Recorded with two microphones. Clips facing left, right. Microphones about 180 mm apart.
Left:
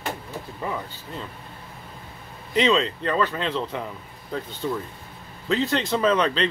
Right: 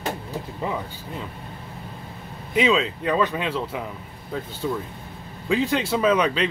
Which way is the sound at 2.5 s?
5° right (ahead or behind).